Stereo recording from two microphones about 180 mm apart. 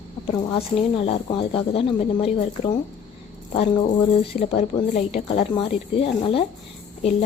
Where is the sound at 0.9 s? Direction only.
30° left (ahead or behind).